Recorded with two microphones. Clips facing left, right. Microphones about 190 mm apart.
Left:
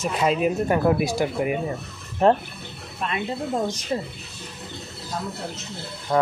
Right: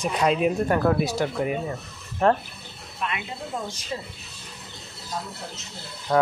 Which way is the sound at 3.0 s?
35° left (ahead or behind).